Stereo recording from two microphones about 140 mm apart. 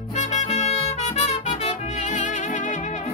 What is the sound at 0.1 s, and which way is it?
Music, 55° left (ahead or behind).